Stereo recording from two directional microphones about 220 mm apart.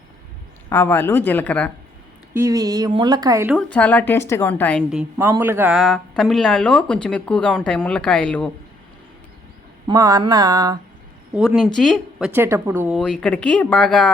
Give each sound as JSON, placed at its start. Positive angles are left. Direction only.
{"t": 0.7, "sound": "speech", "side_deg": 10}
{"t": 2.3, "sound": "speech", "side_deg": -15}
{"t": 3.5, "sound": "a woman's voice", "side_deg": 5}
{"t": 9.8, "sound": "speech", "side_deg": -15}
{"t": 11.3, "sound": "a woman's voice", "side_deg": 0}
{"t": 12.3, "sound": "speech", "side_deg": -10}
{"t": 13.0, "sound": "a woman's voice", "side_deg": 5}